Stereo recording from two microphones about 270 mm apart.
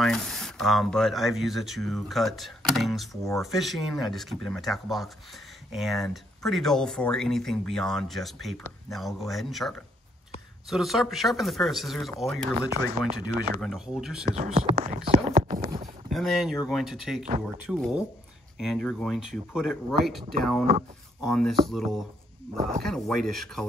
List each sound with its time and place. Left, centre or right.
0.0 s speech: centre
13.6 s speech: centre
14.2 s speech: right
14.8 s whispering: right
16.1 s speech: centre
22.6 s speech: right
22.8 s speech: centre